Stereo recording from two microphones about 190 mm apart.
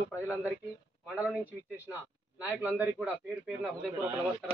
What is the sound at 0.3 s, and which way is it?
A man's voice, 10° right (ahead or behind).